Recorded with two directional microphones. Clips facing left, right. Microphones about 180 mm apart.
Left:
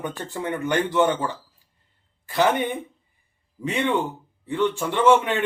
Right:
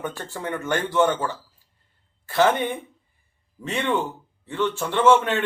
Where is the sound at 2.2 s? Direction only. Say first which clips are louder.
Right 2 dB; 15° left (ahead or behind).